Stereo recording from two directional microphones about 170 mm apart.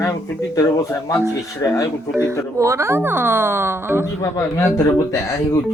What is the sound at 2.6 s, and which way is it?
Speech, 15° right (ahead or behind).